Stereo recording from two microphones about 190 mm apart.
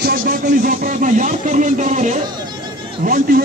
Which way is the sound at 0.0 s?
50° right (ahead or behind).